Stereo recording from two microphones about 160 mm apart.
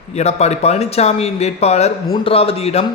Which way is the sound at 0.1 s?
45° left (ahead or behind).